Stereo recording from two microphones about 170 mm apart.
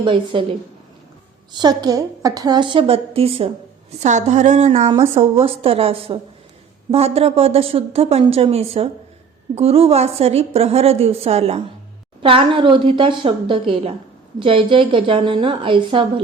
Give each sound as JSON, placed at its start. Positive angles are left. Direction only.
{"t": 0.0, "sound": "a woman's voice", "side_deg": -30}
{"t": 1.5, "sound": "a woman's voice", "side_deg": -25}
{"t": 4.0, "sound": "speech", "side_deg": -45}
{"t": 4.9, "sound": "a woman's voice", "side_deg": -20}
{"t": 5.2, "sound": "a woman's voice", "side_deg": -35}